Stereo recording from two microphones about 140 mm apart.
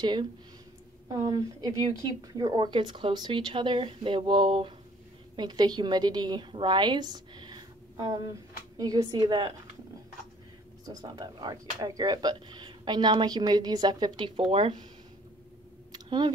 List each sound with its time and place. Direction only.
0.0 s a woman's voice: 30° right (ahead or behind)
10.9 s speech: 30° right (ahead or behind)
15.9 s a sound: 30° right (ahead or behind)